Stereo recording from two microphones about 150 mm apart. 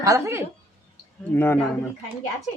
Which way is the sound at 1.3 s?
15° left (ahead or behind).